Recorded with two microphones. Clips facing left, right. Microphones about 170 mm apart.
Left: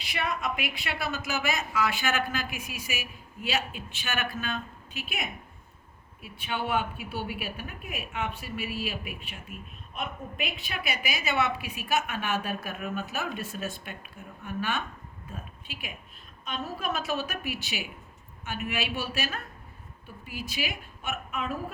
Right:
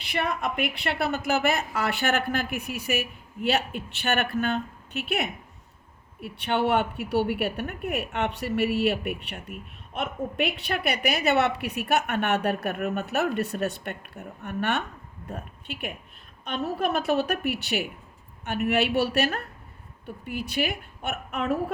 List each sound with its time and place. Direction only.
0.0 s a woman's voice: 55° right (ahead or behind)